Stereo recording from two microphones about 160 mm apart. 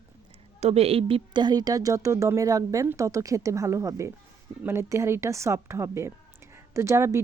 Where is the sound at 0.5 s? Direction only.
40° right (ahead or behind).